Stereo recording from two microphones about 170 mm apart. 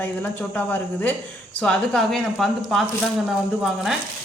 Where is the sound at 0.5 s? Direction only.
10° left (ahead or behind).